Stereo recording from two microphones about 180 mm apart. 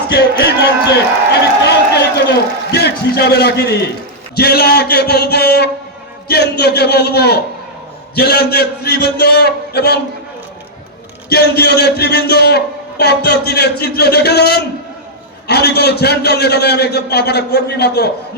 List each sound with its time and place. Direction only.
0.1 s a man's voice: 60° left (ahead or behind)
11.3 s a man's voice: 60° left (ahead or behind)